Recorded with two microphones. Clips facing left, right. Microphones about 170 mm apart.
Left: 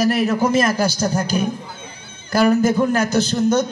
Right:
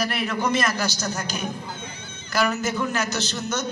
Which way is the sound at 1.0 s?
30° left (ahead or behind).